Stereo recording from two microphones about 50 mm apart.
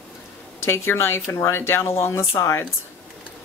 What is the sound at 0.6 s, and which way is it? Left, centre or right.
Speech, left.